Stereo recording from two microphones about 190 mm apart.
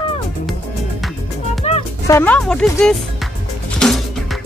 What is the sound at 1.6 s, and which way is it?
Music, 30° left (ahead or behind).